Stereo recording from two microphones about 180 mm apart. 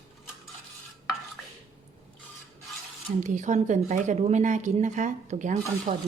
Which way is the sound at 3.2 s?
45° right (ahead or behind).